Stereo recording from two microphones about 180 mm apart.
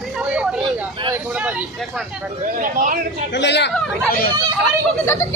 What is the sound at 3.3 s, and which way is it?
Speech, 75° left (ahead or behind).